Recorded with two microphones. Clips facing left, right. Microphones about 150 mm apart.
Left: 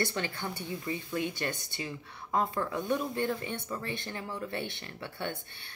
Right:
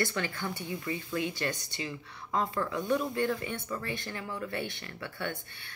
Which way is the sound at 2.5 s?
20° left (ahead or behind).